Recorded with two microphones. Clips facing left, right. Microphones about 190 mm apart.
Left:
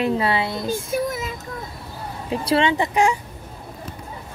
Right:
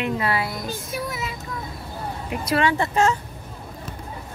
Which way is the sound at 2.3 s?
30° left (ahead or behind).